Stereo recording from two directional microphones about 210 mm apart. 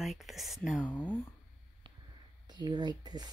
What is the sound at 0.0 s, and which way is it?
Speech, centre (ahead or behind).